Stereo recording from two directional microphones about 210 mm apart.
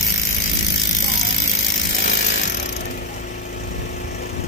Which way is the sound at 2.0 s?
55° left (ahead or behind).